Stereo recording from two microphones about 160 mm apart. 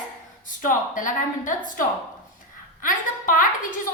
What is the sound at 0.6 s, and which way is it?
A woman's voice, 60° left (ahead or behind).